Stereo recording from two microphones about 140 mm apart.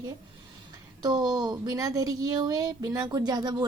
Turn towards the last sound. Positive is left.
turn(degrees=-30)  # may be behind; listen again after turning